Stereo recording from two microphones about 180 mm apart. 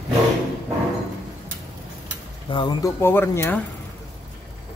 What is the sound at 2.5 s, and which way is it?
Speech, 25° left (ahead or behind).